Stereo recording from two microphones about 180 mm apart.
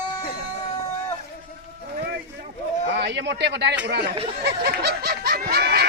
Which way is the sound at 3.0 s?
75° right (ahead or behind).